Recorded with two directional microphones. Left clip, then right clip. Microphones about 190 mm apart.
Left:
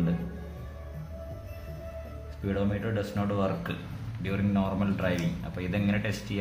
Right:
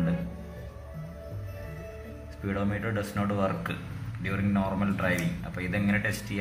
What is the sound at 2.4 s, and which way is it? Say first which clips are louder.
A man's voice: even; 20° left (ahead or behind).